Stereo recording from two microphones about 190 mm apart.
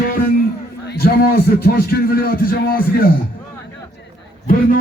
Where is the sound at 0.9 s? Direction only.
50° left (ahead or behind).